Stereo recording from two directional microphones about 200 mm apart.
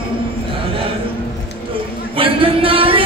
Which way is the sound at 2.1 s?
25° right (ahead or behind).